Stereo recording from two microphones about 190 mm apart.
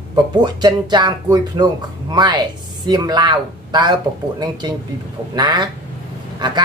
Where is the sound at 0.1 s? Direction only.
20° right (ahead or behind).